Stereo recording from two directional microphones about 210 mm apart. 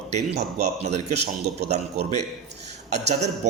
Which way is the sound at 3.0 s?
35° right (ahead or behind).